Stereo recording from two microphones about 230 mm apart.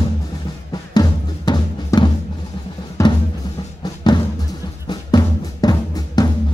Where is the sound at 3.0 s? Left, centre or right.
Centre.